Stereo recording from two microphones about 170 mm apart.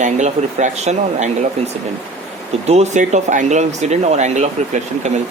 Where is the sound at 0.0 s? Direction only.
45° right (ahead or behind).